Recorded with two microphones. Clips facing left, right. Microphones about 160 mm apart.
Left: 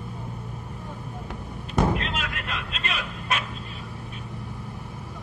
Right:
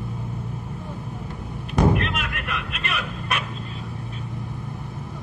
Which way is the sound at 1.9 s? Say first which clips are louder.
Right 3 dB; 65° right (ahead or behind).